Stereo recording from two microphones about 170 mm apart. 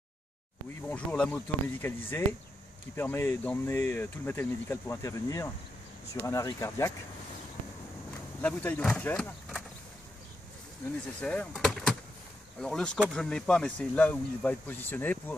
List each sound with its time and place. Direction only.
0.8 s speech: 5° left (ahead or behind)
8.4 s speech: 10° left (ahead or behind)
11.1 s speech: 5° left (ahead or behind)